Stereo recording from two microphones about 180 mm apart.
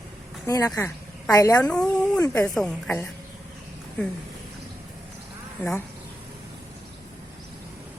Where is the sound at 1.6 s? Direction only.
5° left (ahead or behind).